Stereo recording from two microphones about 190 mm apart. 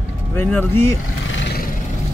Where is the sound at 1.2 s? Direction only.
70° left (ahead or behind).